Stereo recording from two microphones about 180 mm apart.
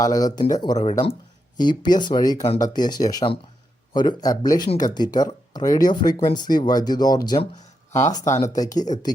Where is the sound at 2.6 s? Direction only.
25° left (ahead or behind).